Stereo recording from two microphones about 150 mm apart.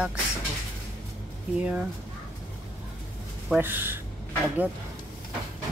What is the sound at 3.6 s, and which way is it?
Speech, 15° right (ahead or behind).